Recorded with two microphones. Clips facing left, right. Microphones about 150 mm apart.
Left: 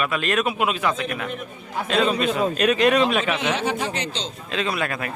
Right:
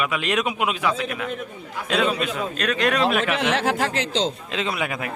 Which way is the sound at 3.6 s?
90° right.